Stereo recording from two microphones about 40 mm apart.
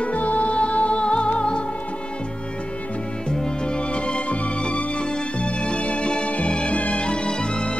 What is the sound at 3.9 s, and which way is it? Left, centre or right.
Music, left.